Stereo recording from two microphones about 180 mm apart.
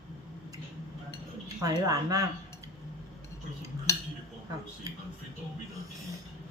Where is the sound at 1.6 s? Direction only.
20° right (ahead or behind).